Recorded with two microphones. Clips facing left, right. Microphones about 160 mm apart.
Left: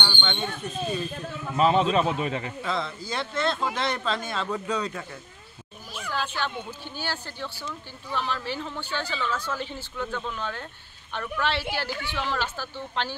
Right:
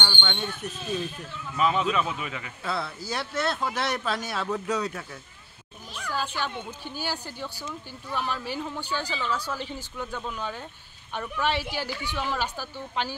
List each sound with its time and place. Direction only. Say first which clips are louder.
0.0 s speech: left 1 dB; 5° right (ahead or behind)
1.3 s a man's voice: left 5 dB; 50° left (ahead or behind)
1.6 s a man's voice: left 4 dB; 35° left (ahead or behind)
2.6 s a woman's voice: left 2 dB; 5° right (ahead or behind)
6.1 s a woman's voice: left 1 dB; 10° right (ahead or behind)